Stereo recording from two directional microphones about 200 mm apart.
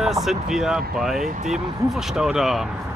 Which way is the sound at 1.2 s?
40° right (ahead or behind).